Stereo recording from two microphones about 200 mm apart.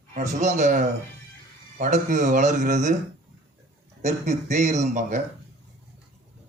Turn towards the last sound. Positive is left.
turn(degrees=-35)  # may be behind; listen again after turning